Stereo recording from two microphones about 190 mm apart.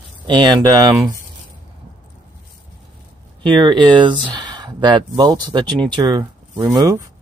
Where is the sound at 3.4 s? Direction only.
25° right (ahead or behind).